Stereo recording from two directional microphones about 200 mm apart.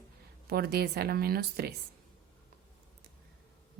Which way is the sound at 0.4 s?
50° right (ahead or behind).